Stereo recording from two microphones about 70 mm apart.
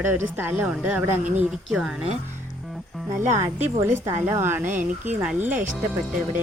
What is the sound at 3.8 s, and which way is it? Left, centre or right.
Speech, right.